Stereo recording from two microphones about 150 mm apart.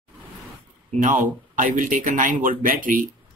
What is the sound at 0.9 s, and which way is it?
Speech, 60° right (ahead or behind).